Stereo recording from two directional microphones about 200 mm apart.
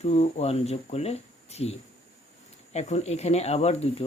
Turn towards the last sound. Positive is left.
turn(degrees=30)  # may be behind; listen again after turning